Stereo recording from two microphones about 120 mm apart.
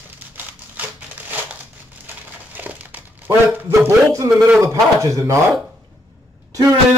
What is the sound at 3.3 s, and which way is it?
A man's voice, 15° right (ahead or behind).